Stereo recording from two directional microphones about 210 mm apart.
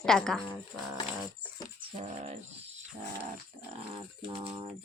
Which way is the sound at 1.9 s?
30° right (ahead or behind).